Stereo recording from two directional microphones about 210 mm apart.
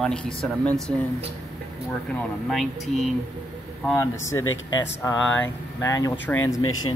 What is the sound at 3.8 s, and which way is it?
Speech, 10° left (ahead or behind).